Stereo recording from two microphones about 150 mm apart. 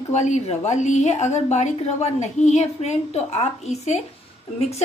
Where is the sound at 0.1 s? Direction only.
50° left (ahead or behind).